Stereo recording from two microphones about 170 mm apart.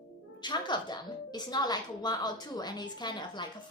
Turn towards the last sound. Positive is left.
turn(degrees=25)  # may be behind; listen again after turning